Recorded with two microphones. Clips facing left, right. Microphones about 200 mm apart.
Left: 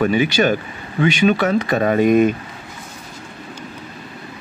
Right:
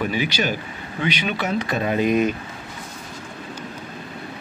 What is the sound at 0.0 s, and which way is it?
Speech, 50° left (ahead or behind).